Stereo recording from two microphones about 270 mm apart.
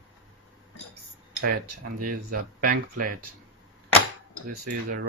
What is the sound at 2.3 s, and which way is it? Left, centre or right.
Speech, right.